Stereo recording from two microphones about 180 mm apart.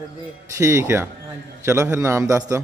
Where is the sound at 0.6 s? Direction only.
15° right (ahead or behind).